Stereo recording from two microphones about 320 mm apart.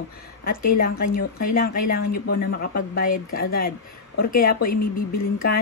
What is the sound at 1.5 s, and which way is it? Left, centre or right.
Speech, left.